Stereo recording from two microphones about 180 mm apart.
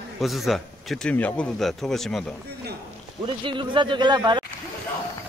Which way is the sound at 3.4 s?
25° right (ahead or behind).